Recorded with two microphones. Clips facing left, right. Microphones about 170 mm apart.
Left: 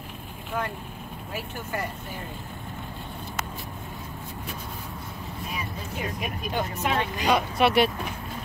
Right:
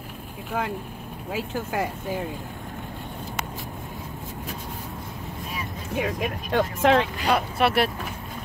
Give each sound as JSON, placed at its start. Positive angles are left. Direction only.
{"t": 1.3, "sound": "speech", "side_deg": -90}
{"t": 5.9, "sound": "speech", "side_deg": -90}
{"t": 7.2, "sound": "speech", "side_deg": 0}